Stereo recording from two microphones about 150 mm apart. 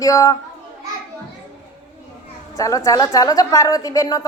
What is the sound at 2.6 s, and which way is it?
A woman's voice, 20° left (ahead or behind).